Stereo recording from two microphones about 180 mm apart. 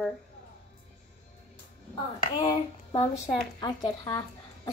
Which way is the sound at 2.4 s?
30° left (ahead or behind).